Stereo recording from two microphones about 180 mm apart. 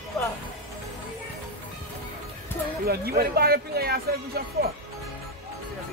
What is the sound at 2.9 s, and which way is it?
Speech, 60° right (ahead or behind).